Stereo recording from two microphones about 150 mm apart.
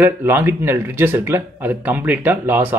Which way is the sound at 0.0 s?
15° right (ahead or behind).